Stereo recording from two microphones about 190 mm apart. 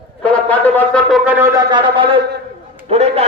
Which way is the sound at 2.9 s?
35° right (ahead or behind).